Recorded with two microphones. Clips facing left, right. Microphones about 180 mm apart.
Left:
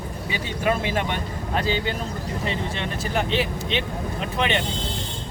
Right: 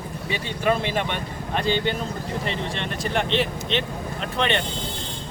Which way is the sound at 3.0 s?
5° left (ahead or behind).